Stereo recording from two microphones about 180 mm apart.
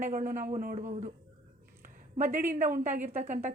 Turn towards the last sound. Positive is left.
turn(degrees=-40)  # may be behind; listen again after turning